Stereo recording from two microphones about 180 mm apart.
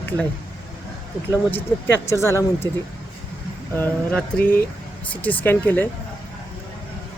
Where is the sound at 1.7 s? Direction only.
5° left (ahead or behind).